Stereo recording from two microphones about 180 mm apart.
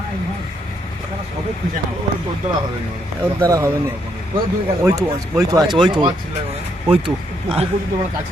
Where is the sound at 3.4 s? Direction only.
15° right (ahead or behind).